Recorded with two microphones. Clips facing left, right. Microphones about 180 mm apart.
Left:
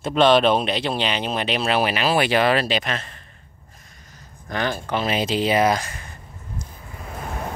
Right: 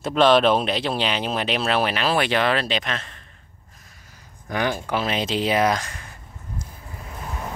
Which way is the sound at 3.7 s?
5° right (ahead or behind).